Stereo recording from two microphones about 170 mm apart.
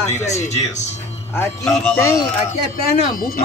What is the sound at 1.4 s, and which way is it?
Speech, 15° left (ahead or behind).